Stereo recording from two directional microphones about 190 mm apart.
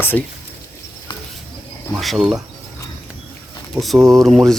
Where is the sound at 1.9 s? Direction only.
Centre (ahead or behind).